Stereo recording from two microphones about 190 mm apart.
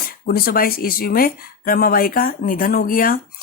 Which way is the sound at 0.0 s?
50° left (ahead or behind).